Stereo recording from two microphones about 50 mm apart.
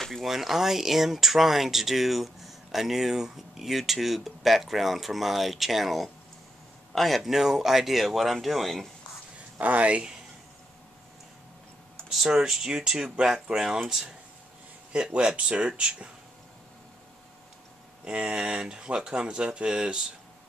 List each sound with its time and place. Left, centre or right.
0.0 s a sound: centre
0.3 s speech: centre
9.6 s speech: right
12.1 s speech: centre
14.9 s speech: centre
18.0 s speech: right